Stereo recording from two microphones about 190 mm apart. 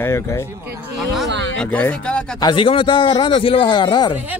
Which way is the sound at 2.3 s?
25° left (ahead or behind).